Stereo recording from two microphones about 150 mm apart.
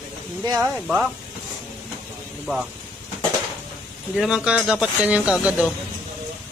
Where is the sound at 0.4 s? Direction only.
20° right (ahead or behind).